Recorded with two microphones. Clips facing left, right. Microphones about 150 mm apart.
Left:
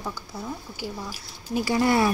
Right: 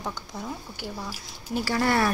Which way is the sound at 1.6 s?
15° left (ahead or behind).